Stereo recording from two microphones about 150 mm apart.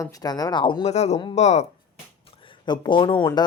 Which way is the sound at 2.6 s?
30° left (ahead or behind).